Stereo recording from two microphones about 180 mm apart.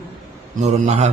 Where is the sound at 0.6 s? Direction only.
40° right (ahead or behind).